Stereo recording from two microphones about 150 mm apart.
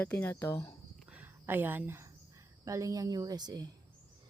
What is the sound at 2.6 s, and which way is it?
Speech, 20° right (ahead or behind).